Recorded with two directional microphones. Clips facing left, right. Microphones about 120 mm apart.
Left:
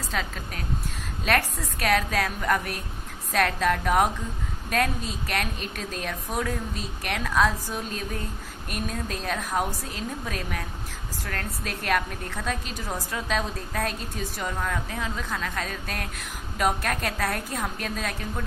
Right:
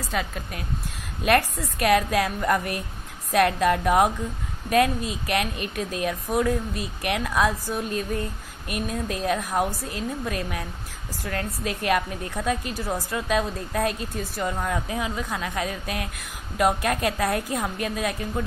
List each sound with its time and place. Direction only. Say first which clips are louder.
0.1 s a woman's voice: right 3 dB; 5° right (ahead or behind)